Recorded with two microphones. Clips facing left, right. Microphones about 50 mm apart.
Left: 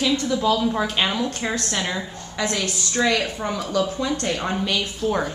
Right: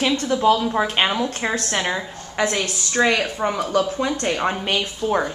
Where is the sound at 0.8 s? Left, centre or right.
Right.